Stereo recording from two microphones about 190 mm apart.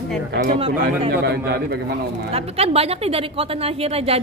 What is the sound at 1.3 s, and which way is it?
Speech, 60° right (ahead or behind).